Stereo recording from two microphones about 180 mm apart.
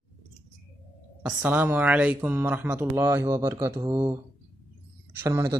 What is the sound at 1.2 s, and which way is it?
Speech, 5° right (ahead or behind).